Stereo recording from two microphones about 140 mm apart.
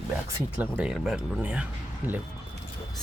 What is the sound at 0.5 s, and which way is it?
Speech, 10° right (ahead or behind).